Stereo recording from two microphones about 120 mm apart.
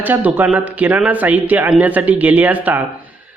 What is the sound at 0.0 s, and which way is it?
Speech, 15° right (ahead or behind).